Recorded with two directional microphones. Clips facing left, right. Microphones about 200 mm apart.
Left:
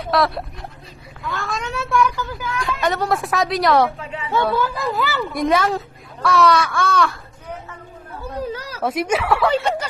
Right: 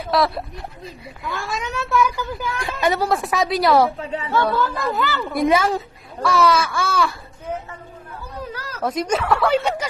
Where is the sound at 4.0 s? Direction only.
35° right (ahead or behind).